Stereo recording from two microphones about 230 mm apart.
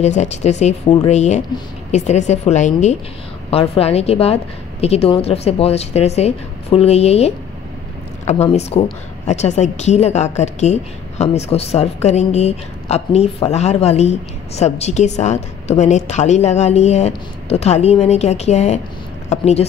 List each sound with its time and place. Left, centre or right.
0.0 s a woman's voice: left